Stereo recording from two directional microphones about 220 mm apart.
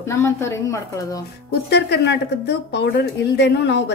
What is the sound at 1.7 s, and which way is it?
A woman's voice, 50° left (ahead or behind).